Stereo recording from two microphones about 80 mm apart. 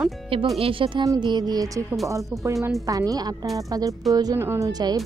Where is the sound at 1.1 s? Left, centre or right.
Right.